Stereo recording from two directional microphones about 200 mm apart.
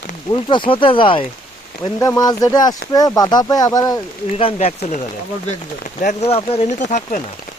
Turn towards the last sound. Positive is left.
turn(degrees=40)  # may be behind; listen again after turning